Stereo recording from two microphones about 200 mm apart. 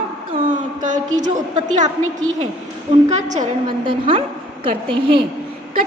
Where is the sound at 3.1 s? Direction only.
35° right (ahead or behind).